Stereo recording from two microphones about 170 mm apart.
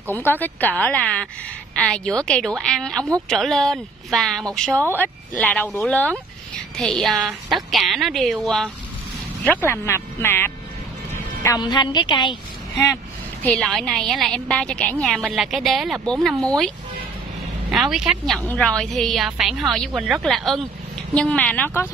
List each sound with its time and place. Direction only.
0.1 s a woman's voice: 10° left (ahead or behind)
11.4 s a woman's voice: 25° left (ahead or behind)
12.9 s a woman's voice: 10° left (ahead or behind)
17.6 s a woman's voice: centre (ahead or behind)